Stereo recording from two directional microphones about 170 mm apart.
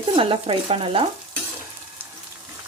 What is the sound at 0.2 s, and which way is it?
Speech, 30° right (ahead or behind).